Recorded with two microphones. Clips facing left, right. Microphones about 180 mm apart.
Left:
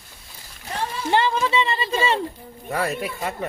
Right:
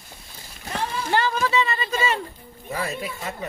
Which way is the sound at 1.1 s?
25° left (ahead or behind).